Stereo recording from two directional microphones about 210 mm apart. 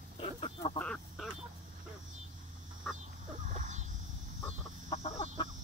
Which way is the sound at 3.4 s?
35° right (ahead or behind).